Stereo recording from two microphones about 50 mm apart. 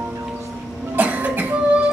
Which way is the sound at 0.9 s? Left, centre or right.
Right.